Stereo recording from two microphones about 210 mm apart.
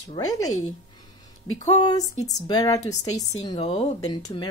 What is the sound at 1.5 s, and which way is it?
A woman's voice, 15° left (ahead or behind).